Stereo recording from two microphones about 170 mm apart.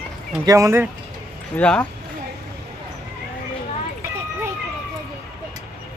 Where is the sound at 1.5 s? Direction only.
10° left (ahead or behind).